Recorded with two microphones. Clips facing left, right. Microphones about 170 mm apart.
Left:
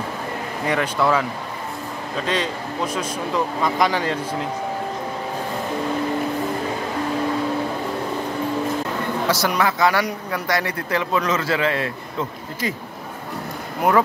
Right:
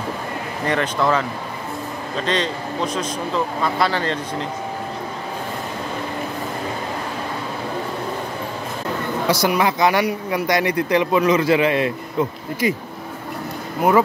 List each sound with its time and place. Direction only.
0.7 s speech: 10° left (ahead or behind)
2.2 s speech: 10° left (ahead or behind)
9.3 s speech: 15° right (ahead or behind)